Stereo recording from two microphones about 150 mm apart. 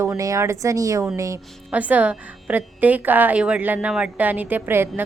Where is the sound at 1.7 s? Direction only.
10° right (ahead or behind).